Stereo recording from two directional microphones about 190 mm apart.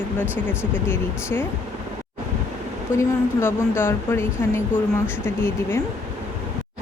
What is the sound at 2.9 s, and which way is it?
Speech, 15° left (ahead or behind).